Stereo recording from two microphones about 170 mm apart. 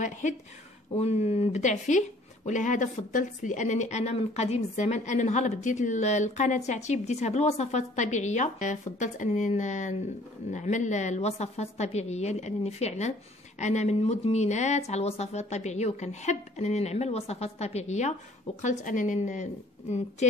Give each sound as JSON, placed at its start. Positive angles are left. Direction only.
{"t": 0.0, "sound": "speech", "side_deg": 45}